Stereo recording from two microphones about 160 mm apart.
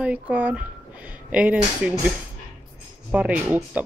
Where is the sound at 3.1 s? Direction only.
10° right (ahead or behind).